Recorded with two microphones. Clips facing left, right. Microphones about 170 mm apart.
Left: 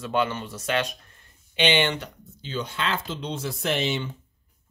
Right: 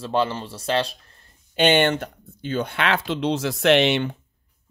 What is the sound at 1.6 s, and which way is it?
Speech, 50° right (ahead or behind).